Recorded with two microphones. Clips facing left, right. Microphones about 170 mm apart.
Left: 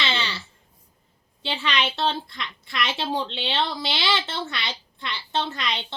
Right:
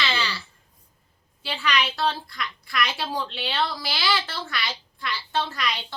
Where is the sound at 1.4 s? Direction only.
25° left (ahead or behind).